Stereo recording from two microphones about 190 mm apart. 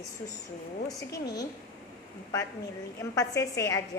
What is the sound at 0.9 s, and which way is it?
Speech, 20° left (ahead or behind).